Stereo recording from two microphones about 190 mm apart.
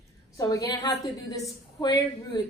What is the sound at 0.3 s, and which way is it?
A woman's voice, 15° left (ahead or behind).